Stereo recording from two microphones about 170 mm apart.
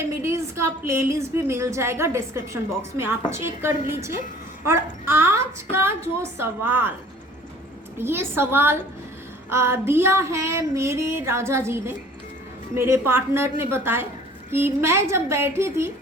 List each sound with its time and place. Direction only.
0.2 s a woman's voice: 15° right (ahead or behind)
1.5 s female singing: 15° right (ahead or behind)
7.9 s female singing: 15° right (ahead or behind)